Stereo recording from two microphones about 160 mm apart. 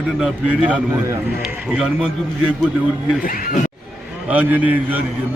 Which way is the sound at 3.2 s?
60° left (ahead or behind).